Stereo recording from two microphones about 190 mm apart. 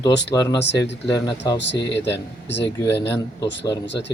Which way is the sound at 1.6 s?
65° left (ahead or behind).